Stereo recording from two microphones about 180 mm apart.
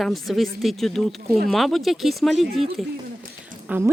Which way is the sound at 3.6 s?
10° right (ahead or behind).